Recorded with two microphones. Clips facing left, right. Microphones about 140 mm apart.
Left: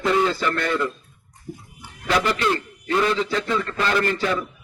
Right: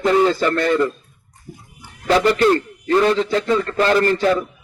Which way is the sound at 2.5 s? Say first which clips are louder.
Right 7 dB; 40° right (ahead or behind).